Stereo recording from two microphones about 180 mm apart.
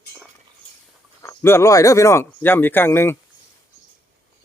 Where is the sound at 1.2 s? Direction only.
15° left (ahead or behind).